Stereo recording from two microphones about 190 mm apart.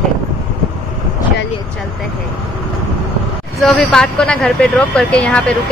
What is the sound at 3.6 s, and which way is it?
Speech, centre (ahead or behind).